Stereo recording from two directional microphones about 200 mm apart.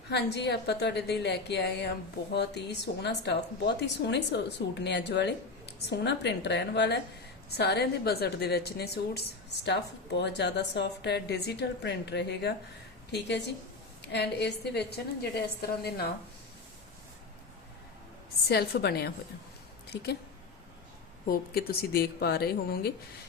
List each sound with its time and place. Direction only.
0.1 s a woman's voice: 55° left (ahead or behind)
18.4 s a woman's voice: 50° left (ahead or behind)
21.2 s a woman's voice: 50° left (ahead or behind)